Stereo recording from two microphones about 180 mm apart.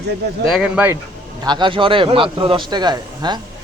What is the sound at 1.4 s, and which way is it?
A man's voice, 25° right (ahead or behind).